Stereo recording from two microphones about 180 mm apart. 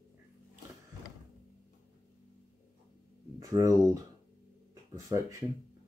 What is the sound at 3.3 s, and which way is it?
Speech, 20° right (ahead or behind).